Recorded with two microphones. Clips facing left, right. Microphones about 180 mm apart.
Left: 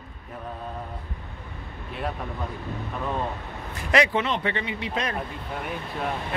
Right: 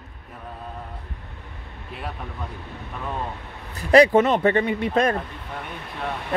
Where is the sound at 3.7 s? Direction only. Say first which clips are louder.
Right 8 dB; 35° right (ahead or behind).